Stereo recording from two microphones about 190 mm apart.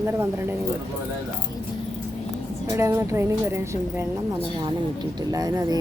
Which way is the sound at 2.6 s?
15° right (ahead or behind).